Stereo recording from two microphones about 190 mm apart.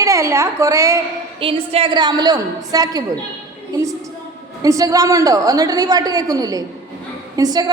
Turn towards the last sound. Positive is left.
turn(degrees=-20)  # may be behind; listen again after turning